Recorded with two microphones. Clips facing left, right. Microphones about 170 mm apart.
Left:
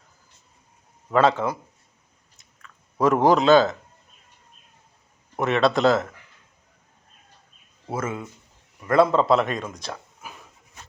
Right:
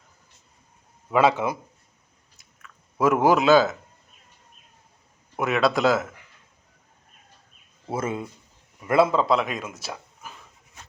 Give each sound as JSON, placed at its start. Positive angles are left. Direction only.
{"t": 1.1, "sound": "speech", "side_deg": -10}
{"t": 3.0, "sound": "a man's voice", "side_deg": -5}
{"t": 5.4, "sound": "a man's voice", "side_deg": 0}
{"t": 7.9, "sound": "speech", "side_deg": -30}
{"t": 8.9, "sound": "a man's voice", "side_deg": -5}